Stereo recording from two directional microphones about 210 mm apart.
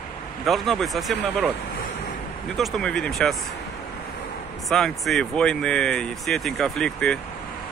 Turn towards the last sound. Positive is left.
turn(degrees=5)  # may be behind; listen again after turning